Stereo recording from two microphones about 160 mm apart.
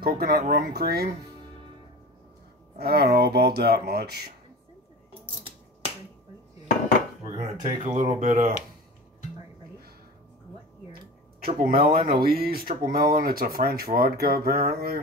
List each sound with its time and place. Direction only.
0.0 s speech: 70° right (ahead or behind)
2.8 s speech: 80° right
7.2 s speech: 30° right (ahead or behind)
8.0 s speech: 55° right (ahead or behind)
11.4 s speech: 65° right (ahead or behind)